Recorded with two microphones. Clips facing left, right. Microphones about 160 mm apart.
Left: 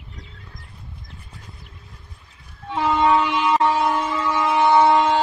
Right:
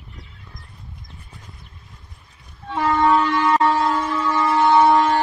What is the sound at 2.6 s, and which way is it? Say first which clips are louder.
Wind instrument: right 1 dB; 15° left (ahead or behind).